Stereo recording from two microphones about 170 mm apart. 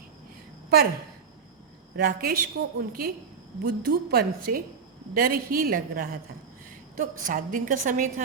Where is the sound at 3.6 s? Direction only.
65° right (ahead or behind).